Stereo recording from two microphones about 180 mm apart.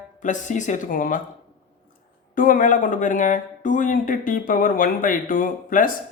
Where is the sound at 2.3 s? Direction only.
50° left (ahead or behind).